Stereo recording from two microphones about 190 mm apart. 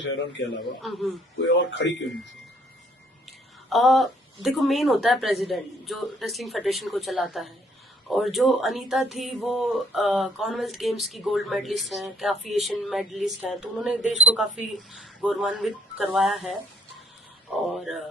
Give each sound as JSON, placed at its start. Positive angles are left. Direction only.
{"t": 0.0, "sound": "a man's voice", "side_deg": 70}
{"t": 0.8, "sound": "speech", "side_deg": 0}
{"t": 1.5, "sound": "a man's voice", "side_deg": 70}
{"t": 3.2, "sound": "speech", "side_deg": 0}
{"t": 17.7, "sound": "speech", "side_deg": 0}